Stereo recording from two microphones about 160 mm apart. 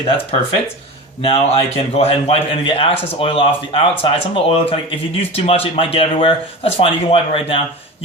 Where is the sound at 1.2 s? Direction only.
35° left (ahead or behind).